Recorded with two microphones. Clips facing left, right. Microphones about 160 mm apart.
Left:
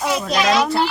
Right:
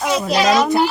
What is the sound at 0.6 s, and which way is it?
Speech, 15° right (ahead or behind).